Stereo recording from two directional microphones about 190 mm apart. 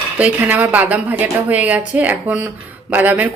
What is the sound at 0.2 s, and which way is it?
A woman's voice, 10° right (ahead or behind).